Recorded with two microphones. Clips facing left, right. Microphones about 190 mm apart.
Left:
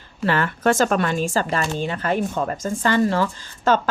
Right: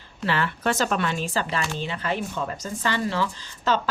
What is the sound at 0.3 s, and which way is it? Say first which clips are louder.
Speech: left 5 dB; 50° left (ahead or behind).